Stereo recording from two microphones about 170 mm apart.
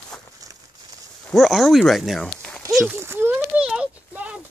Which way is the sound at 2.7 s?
10° right (ahead or behind).